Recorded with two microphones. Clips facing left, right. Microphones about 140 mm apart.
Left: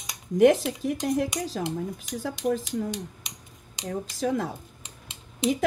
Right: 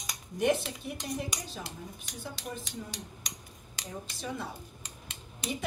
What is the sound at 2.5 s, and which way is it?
Speech, 90° left.